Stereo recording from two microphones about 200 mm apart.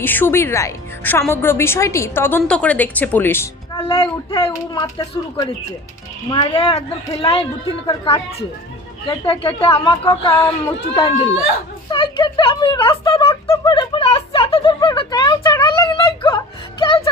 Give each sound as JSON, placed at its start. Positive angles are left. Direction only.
{"t": 0.0, "sound": "a woman's voice", "side_deg": 10}
{"t": 3.8, "sound": "a woman's voice", "side_deg": 20}
{"t": 6.3, "sound": "a woman's voice", "side_deg": 25}
{"t": 10.3, "sound": "a woman's voice", "side_deg": 10}
{"t": 11.9, "sound": "a sound", "side_deg": 25}